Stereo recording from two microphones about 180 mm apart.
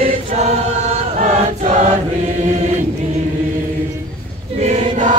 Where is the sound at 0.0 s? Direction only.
35° right (ahead or behind).